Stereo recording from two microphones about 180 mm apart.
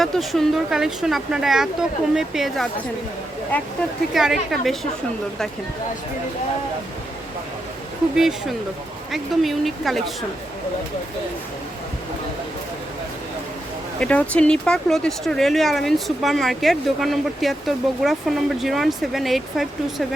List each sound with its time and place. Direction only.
0.0 s speech: centre (ahead or behind)
3.5 s speech: 10° left (ahead or behind)
4.1 s speech: centre (ahead or behind)
8.1 s speech: centre (ahead or behind)
14.0 s speech: 5° left (ahead or behind)